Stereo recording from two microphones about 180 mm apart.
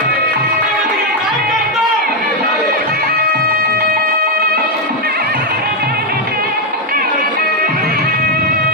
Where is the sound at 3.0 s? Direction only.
55° right (ahead or behind).